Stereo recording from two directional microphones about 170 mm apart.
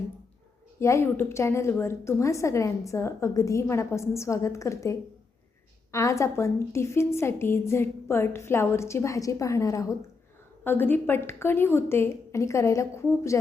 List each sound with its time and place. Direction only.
0.8 s a woman's voice: 15° left (ahead or behind)